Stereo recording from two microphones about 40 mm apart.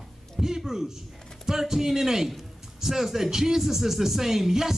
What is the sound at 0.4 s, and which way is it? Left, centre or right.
A woman's voice, centre.